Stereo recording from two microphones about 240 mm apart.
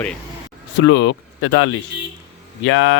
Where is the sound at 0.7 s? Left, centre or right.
Left.